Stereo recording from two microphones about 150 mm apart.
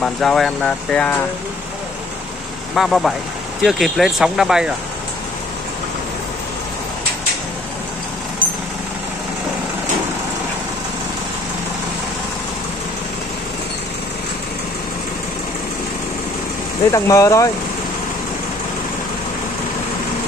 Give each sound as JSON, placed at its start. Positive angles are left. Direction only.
{"t": 0.0, "sound": "speech", "side_deg": 5}
{"t": 2.7, "sound": "speech", "side_deg": 0}
{"t": 16.9, "sound": "speech", "side_deg": 20}